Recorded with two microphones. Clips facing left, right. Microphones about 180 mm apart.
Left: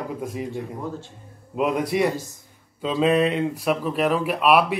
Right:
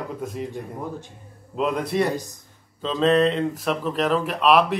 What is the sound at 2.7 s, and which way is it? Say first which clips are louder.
Speech: right 1 dB; 10° left (ahead or behind).